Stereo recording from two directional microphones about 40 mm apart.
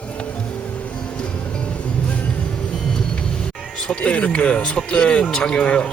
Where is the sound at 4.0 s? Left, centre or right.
Left.